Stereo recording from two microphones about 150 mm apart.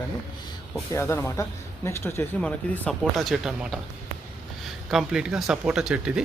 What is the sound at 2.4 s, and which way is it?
Speech, centre (ahead or behind).